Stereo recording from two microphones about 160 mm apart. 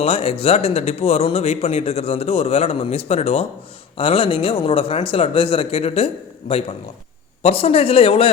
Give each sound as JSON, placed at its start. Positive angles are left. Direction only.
{"t": 0.0, "sound": "speech", "side_deg": 40}